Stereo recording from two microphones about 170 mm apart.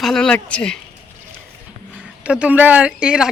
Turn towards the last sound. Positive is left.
turn(degrees=-5)  # may be behind; listen again after turning